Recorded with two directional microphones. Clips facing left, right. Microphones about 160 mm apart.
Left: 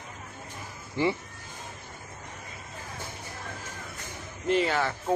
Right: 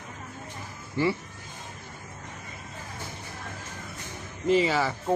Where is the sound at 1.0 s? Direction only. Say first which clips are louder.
Right 1 dB; 20° left (ahead or behind).